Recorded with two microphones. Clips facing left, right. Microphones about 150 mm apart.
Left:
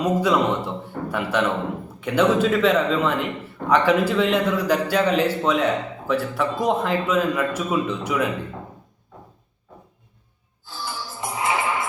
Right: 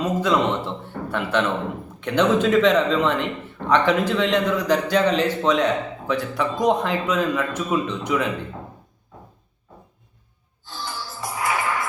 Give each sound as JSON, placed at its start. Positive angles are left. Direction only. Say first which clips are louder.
{"t": 0.0, "sound": "a man's voice", "louder": "left 1 dB", "side_deg": 10}
{"t": 11.2, "sound": "music", "louder": "left 1 dB", "side_deg": 20}